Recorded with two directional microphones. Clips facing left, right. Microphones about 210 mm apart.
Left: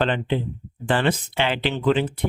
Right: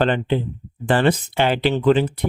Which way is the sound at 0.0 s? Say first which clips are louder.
Right 3 dB; 40° right (ahead or behind).